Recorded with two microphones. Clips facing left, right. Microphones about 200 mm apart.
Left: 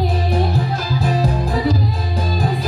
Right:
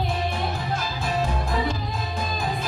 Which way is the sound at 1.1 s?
35° left (ahead or behind).